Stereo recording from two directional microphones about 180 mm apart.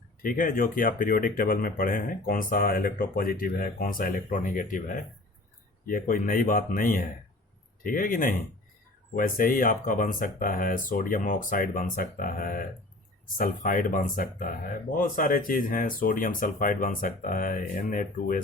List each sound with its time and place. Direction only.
0.2 s speech: 50° left (ahead or behind)